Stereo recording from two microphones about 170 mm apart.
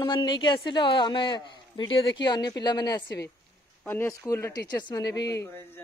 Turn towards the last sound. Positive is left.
turn(degrees=20)  # may be behind; listen again after turning